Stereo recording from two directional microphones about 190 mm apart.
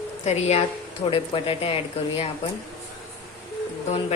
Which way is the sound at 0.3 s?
35° left (ahead or behind).